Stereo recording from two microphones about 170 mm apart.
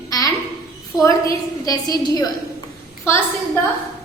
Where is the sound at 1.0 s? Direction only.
20° left (ahead or behind).